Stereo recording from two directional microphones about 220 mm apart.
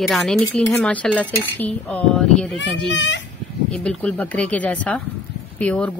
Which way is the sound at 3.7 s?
5° left (ahead or behind).